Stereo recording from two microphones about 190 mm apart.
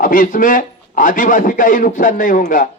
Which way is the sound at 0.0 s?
45° left (ahead or behind).